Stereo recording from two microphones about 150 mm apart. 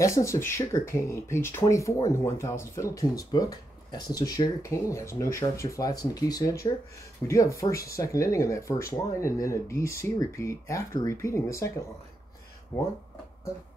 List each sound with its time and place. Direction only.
0.0 s speech: 20° left (ahead or behind)
12.7 s speech: 20° left (ahead or behind)